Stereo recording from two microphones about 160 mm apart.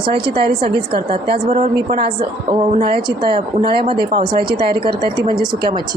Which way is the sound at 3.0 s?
30° right (ahead or behind).